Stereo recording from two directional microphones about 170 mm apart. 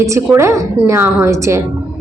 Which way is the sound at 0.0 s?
15° right (ahead or behind).